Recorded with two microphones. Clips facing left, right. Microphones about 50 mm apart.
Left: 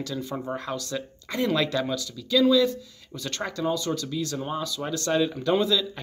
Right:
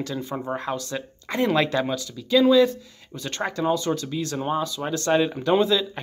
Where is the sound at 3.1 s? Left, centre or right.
Right.